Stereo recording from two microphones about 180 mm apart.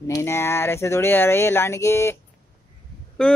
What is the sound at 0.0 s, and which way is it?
Speech, 15° left (ahead or behind).